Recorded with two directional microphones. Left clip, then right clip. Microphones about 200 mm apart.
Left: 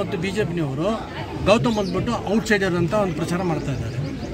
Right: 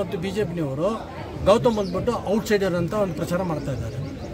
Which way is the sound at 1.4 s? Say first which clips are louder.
Even; 60° right (ahead or behind).